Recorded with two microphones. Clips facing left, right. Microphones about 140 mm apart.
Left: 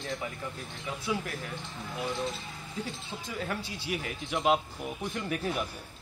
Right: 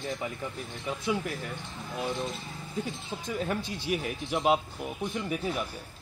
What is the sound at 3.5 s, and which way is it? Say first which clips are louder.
Speech: right 4 dB; 20° right (ahead or behind).